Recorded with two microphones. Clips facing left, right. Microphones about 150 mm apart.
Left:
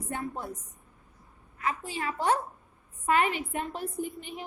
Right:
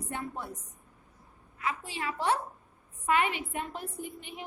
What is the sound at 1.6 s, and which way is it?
A woman's voice, 45° left (ahead or behind).